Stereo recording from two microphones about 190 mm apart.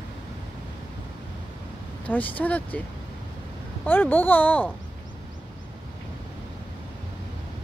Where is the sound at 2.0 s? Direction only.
10° left (ahead or behind).